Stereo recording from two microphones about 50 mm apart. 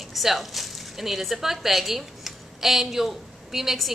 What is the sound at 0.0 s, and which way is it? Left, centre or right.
Speech, centre.